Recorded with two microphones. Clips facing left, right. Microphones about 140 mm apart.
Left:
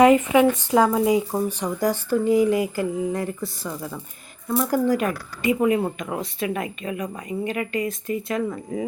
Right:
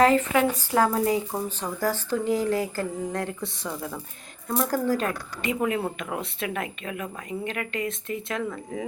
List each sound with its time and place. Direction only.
0.0 s speech: 15° left (ahead or behind); by 4.7 s centre (ahead or behind)
4.7 s speech: 15° left (ahead or behind)
6.0 s a woman's voice: centre (ahead or behind)